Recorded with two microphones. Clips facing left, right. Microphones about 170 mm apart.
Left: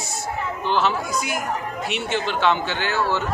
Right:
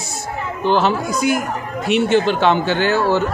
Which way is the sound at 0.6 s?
40° right (ahead or behind).